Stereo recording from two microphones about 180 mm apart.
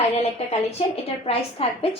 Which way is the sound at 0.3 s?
35° left (ahead or behind).